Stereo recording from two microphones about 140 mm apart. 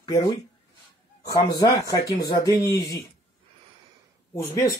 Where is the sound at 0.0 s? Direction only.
25° left (ahead or behind).